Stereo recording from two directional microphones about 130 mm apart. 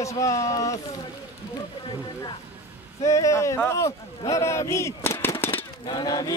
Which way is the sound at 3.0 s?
25° left (ahead or behind).